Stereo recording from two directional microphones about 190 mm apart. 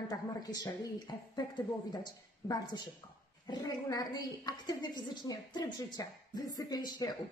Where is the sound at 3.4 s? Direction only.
20° left (ahead or behind).